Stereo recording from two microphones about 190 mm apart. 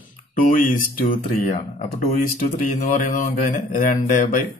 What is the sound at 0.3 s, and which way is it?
Speech, 45° left (ahead or behind).